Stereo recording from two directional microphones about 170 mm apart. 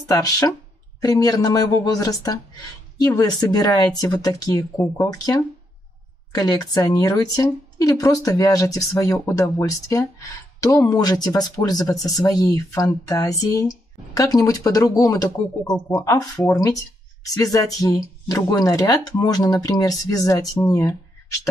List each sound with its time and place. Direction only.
0.2 s a woman's voice: 20° left (ahead or behind)